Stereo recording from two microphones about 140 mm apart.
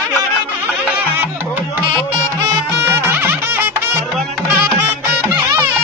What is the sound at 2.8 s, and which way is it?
Music, 15° right (ahead or behind).